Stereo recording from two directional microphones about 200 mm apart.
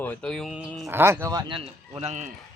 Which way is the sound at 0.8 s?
10° right (ahead or behind).